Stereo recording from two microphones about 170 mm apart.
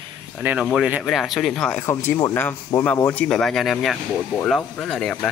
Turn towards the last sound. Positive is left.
turn(degrees=5)  # may be behind; listen again after turning